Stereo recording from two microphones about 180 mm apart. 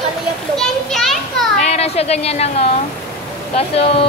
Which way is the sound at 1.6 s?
35° left (ahead or behind).